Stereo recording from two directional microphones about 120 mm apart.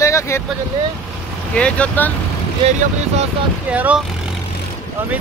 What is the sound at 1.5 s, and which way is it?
Speech, 10° left (ahead or behind).